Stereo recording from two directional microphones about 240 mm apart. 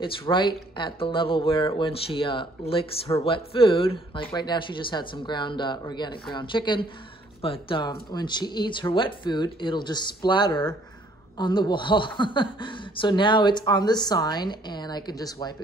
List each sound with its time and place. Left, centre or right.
0.0 s speech: centre